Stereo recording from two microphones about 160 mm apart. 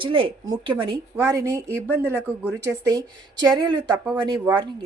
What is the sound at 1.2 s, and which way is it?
A woman's voice, 20° right (ahead or behind).